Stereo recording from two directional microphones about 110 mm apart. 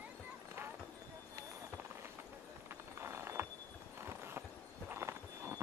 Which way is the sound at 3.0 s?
25° right (ahead or behind).